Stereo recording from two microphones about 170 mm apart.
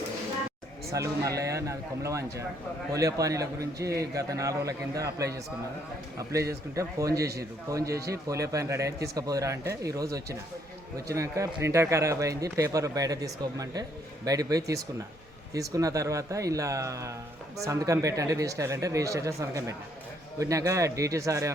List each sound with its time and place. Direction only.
0.9 s speech: 20° right (ahead or behind)